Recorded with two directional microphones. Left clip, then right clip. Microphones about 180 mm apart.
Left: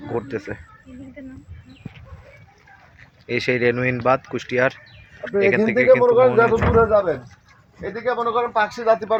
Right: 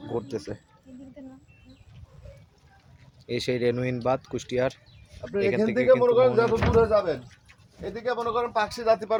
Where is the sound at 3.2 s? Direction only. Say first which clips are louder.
Left 6 dB; 10° right (ahead or behind).